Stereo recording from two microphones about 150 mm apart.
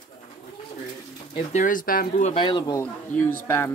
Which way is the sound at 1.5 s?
60° left (ahead or behind).